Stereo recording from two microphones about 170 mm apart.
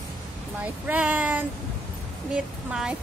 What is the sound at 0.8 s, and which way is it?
Speech, 10° right (ahead or behind).